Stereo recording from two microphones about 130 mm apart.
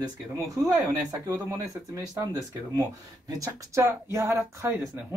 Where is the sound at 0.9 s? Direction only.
25° right (ahead or behind).